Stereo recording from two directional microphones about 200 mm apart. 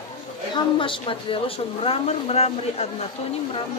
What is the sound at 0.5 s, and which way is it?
A woman's voice, 25° left (ahead or behind).